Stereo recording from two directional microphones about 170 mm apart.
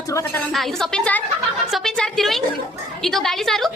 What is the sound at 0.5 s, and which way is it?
A woman's voice, centre (ahead or behind).